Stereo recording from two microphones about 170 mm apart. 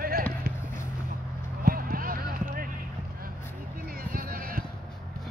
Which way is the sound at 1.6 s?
60° right (ahead or behind).